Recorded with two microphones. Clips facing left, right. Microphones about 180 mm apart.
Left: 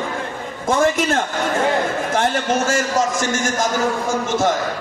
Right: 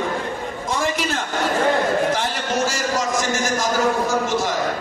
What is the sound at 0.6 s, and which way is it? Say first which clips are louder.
A man's voice: left 7 dB; 50° left (ahead or behind).